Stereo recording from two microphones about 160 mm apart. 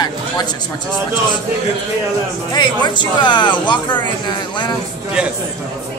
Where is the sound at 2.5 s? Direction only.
30° left (ahead or behind).